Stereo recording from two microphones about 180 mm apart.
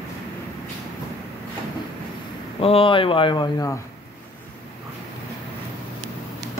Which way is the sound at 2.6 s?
30° left (ahead or behind).